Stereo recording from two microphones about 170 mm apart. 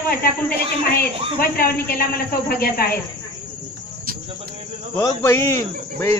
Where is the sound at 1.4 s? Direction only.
60° left (ahead or behind).